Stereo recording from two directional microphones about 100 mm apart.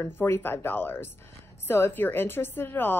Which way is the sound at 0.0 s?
20° left (ahead or behind).